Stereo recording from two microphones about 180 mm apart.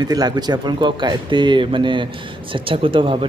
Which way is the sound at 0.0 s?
20° right (ahead or behind).